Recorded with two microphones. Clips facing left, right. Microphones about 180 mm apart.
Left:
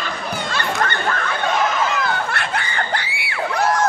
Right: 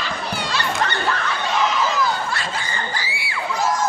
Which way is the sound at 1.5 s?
55° left (ahead or behind).